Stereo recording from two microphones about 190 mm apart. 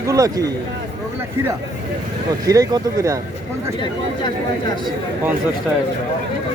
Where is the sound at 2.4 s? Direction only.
20° right (ahead or behind).